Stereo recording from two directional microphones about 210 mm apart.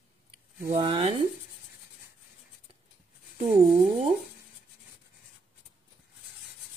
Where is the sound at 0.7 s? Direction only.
25° right (ahead or behind).